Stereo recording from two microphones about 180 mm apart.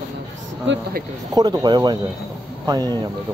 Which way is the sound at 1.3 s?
20° right (ahead or behind).